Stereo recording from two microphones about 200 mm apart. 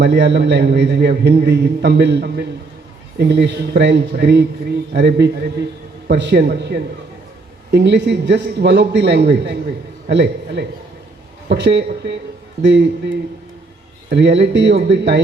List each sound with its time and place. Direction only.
0.0 s a man's voice: 60° right (ahead or behind)